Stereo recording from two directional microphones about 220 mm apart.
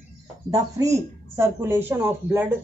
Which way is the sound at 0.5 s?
15° right (ahead or behind).